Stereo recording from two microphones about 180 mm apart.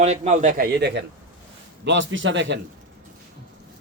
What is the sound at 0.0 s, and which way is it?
A man's voice, 40° right (ahead or behind).